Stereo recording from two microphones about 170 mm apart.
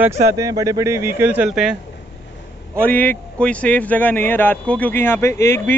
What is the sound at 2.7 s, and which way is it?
Speech, 10° left (ahead or behind).